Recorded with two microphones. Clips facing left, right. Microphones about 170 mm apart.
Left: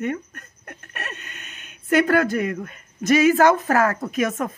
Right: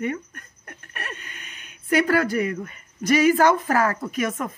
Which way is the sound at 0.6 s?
25° left (ahead or behind).